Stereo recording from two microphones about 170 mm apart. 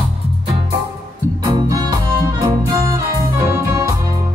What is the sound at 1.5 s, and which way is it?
Music, 20° right (ahead or behind).